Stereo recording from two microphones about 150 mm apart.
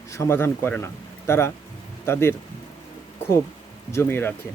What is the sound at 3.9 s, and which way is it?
Speech, 15° left (ahead or behind).